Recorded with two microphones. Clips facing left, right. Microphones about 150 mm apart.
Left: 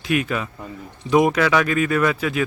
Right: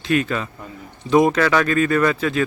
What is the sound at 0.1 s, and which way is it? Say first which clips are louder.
Speech: right 2 dB; 10° left (ahead or behind).